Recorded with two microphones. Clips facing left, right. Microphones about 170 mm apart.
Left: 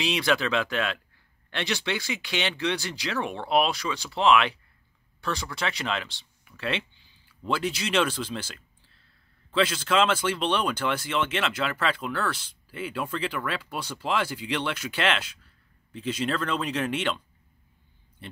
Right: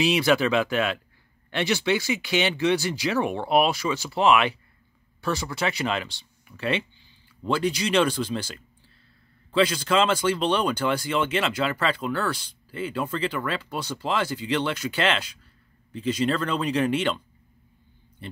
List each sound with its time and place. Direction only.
0.0 s speech: 5° right (ahead or behind)
18.2 s speech: centre (ahead or behind)